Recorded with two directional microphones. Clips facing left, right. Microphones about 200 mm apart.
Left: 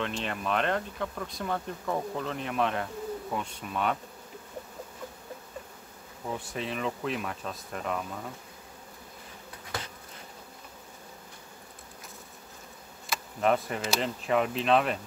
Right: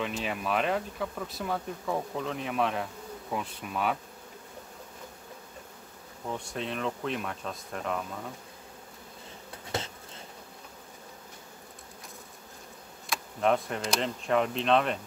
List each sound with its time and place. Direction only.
0.0 s speech: 5° right (ahead or behind)
6.2 s speech: centre (ahead or behind)
9.7 s bee: 25° right (ahead or behind)
13.1 s speech: centre (ahead or behind)